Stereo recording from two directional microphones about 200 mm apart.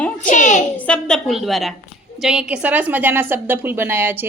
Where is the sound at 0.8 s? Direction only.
5° left (ahead or behind).